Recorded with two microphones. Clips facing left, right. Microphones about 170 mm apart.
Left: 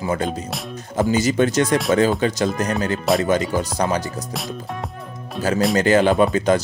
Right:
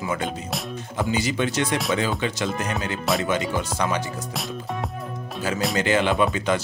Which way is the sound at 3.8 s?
40° left (ahead or behind).